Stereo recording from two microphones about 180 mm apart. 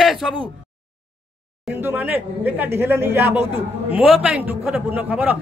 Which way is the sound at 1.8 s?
10° right (ahead or behind).